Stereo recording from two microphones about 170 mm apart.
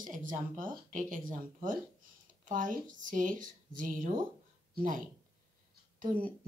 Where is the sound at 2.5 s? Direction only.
50° right (ahead or behind).